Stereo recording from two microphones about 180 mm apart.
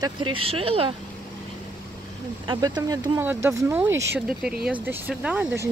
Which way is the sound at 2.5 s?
25° right (ahead or behind).